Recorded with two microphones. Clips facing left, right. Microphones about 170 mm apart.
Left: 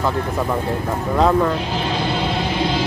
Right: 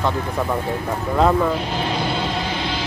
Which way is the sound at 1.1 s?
Centre (ahead or behind).